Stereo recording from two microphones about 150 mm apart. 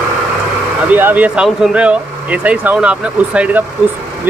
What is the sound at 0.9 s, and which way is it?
Speech, 10° right (ahead or behind).